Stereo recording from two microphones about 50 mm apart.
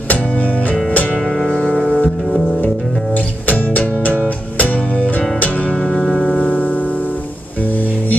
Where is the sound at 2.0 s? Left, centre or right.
Centre.